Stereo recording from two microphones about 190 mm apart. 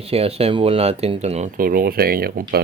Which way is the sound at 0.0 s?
30° right (ahead or behind).